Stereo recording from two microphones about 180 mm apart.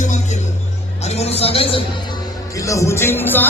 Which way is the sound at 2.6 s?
15° left (ahead or behind).